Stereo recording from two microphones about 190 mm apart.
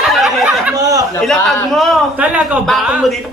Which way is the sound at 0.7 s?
20° right (ahead or behind).